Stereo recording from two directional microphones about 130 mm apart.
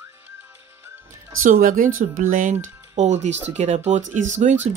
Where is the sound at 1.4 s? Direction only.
90° right; by 4.7 s 65° right (ahead or behind).